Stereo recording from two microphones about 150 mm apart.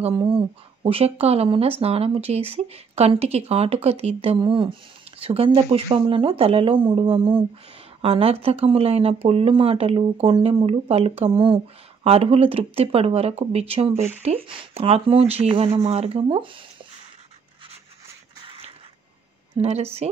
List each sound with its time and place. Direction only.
0.2 s speech: 35° right (ahead or behind)
18.4 s a sound: 35° right (ahead or behind)
19.5 s speech: 45° right (ahead or behind)